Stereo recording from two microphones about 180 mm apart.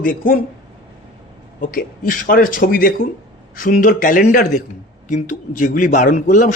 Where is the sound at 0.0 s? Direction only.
50° left (ahead or behind).